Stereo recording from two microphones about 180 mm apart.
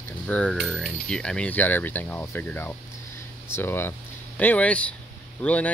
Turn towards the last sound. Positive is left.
turn(degrees=5)  # may be behind; listen again after turning